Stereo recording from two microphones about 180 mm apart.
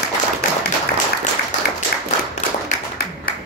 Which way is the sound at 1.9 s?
60° left (ahead or behind).